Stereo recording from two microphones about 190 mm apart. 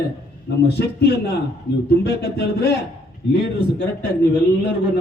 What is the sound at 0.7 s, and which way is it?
A man's voice, 60° left (ahead or behind).